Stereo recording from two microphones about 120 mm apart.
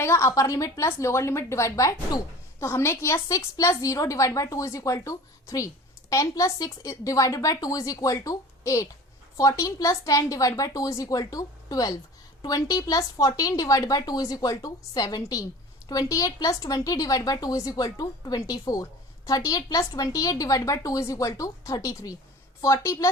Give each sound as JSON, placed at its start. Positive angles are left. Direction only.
{"t": 0.0, "sound": "a woman's voice", "side_deg": 25}